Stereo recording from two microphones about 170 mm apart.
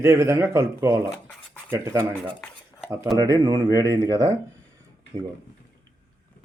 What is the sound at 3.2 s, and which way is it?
Speech, 25° right (ahead or behind).